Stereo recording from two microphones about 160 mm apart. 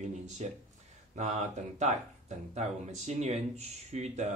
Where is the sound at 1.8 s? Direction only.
45° right (ahead or behind).